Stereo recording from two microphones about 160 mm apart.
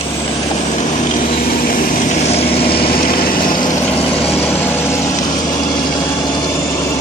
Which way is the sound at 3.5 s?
25° left (ahead or behind).